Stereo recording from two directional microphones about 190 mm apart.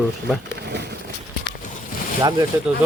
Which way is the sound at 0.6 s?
60° right (ahead or behind).